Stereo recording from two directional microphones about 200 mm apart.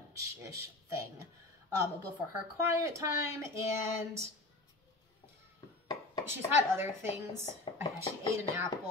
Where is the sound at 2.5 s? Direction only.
15° right (ahead or behind).